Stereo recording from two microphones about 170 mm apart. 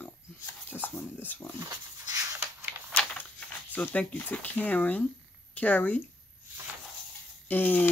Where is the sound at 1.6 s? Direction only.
20° right (ahead or behind).